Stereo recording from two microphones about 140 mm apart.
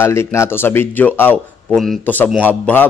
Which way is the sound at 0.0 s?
20° left (ahead or behind).